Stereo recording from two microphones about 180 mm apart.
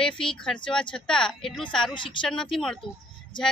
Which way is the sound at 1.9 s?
25° left (ahead or behind).